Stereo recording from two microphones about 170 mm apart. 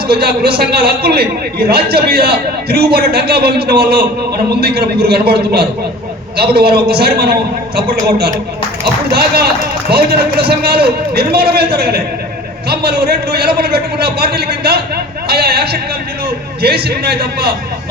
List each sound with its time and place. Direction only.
0.1 s a man's voice: 65° right (ahead or behind)
8.8 s a man's voice: 65° right (ahead or behind)
10.5 s a man's voice: 65° right (ahead or behind)